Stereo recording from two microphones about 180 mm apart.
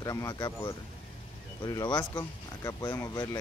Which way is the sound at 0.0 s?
20° left (ahead or behind).